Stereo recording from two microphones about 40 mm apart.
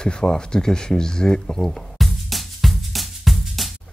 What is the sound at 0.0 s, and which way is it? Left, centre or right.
Speech, centre.